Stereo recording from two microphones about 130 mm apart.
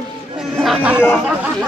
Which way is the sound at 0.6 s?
10° right (ahead or behind).